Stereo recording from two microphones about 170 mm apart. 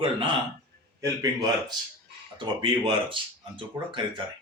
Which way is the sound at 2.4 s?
25° right (ahead or behind).